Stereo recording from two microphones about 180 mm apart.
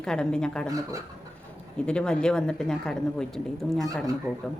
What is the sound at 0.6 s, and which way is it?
Speech, 20° right (ahead or behind).